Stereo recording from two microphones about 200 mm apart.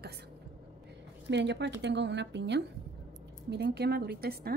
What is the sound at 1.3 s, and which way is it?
A woman's voice, 60° right (ahead or behind).